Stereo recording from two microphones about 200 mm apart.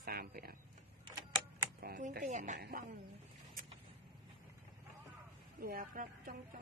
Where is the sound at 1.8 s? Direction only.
45° right (ahead or behind).